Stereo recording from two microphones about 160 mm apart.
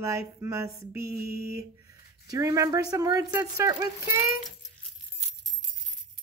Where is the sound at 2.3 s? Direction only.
20° right (ahead or behind).